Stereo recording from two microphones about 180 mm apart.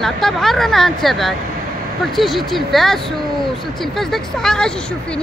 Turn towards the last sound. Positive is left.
turn(degrees=5)  # may be behind; listen again after turning